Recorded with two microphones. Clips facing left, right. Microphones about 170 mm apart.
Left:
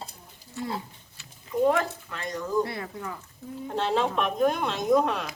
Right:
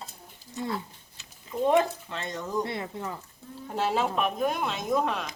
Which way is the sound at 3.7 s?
10° right (ahead or behind).